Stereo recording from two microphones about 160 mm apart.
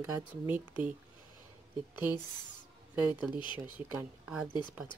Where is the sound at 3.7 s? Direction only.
10° right (ahead or behind).